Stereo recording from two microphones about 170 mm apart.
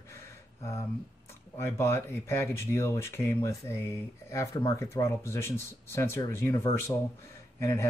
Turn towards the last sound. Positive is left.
turn(degrees=15)  # may be behind; listen again after turning